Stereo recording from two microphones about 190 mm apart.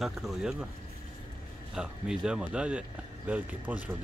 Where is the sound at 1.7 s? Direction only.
5° right (ahead or behind).